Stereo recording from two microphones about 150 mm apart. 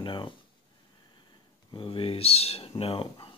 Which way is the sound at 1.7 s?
35° left (ahead or behind).